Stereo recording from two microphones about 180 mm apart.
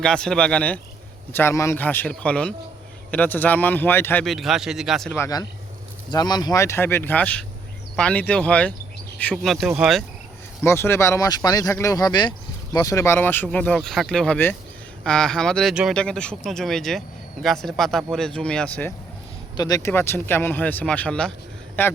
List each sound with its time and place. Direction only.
0.0 s speech: 5° left (ahead or behind)
5.1 s speech: 20° left (ahead or behind); by 10.0 s 5° right (ahead or behind)
10.6 s speech: 15° left (ahead or behind)
19.5 s speech: 20° left (ahead or behind)